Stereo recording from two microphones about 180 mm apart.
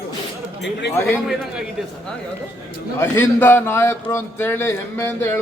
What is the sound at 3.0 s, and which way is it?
A man's voice, 10° left (ahead or behind).